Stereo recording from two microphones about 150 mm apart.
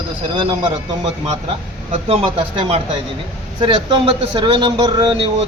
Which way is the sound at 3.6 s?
35° right (ahead or behind).